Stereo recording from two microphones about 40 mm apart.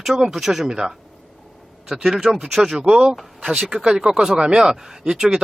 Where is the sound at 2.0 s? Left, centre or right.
Centre.